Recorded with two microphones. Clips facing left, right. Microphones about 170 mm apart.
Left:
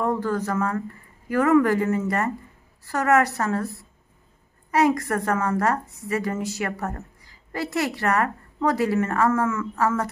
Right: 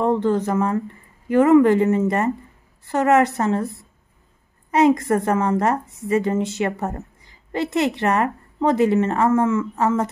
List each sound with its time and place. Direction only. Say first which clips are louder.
0.0 s a woman's voice: right 5 dB; 25° right (ahead or behind)